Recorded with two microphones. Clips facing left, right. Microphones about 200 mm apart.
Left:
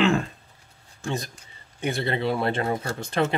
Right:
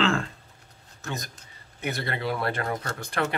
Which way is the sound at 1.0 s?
30° left (ahead or behind).